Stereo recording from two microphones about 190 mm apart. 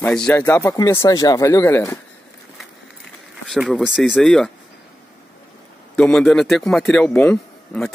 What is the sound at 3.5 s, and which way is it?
A man's voice, centre (ahead or behind).